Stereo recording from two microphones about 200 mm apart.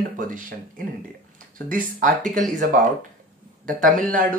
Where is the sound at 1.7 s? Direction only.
40° right (ahead or behind).